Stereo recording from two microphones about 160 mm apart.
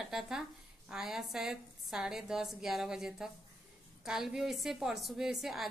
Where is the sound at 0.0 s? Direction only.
5° right (ahead or behind).